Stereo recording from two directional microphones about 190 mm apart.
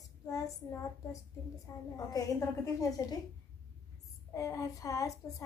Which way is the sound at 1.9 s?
15° left (ahead or behind).